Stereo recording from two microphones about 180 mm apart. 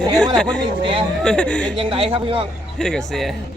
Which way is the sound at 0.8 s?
25° right (ahead or behind).